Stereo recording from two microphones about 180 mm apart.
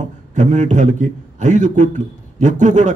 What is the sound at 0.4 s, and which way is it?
A man's voice, 40° right (ahead or behind).